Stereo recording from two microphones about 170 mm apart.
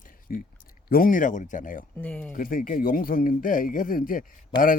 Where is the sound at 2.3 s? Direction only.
55° left (ahead or behind).